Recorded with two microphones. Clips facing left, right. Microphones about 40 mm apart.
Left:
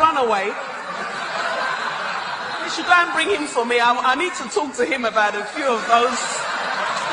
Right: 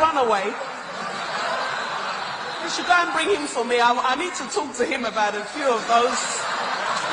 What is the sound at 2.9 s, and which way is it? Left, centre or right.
A man's voice, left.